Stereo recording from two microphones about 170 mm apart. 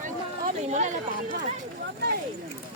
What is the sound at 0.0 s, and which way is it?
Chatter, 45° right (ahead or behind).